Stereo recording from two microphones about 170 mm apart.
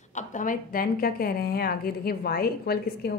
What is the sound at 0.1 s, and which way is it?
A woman's voice, 45° left (ahead or behind).